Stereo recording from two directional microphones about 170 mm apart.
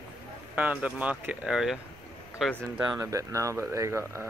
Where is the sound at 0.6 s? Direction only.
10° right (ahead or behind).